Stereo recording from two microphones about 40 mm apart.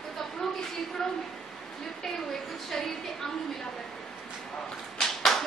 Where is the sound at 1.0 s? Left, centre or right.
Centre.